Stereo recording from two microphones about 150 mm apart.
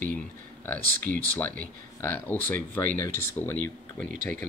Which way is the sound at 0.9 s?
70° right (ahead or behind).